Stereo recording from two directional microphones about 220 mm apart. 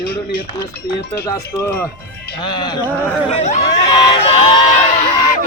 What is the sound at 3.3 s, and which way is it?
Speech, 30° left (ahead or behind).